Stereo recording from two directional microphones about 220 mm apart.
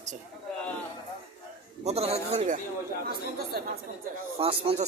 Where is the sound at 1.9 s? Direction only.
30° right (ahead or behind).